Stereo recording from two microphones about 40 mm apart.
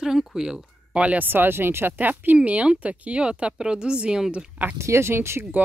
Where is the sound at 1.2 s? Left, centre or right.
Right.